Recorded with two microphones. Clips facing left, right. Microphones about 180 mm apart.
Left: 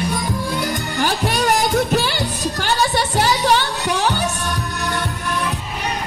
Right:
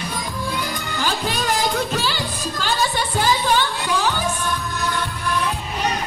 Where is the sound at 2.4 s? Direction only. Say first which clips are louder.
Left 3 dB; 80° left.